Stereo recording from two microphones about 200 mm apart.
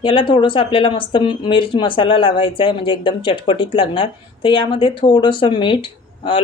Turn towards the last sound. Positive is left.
turn(degrees=25)  # may be behind; listen again after turning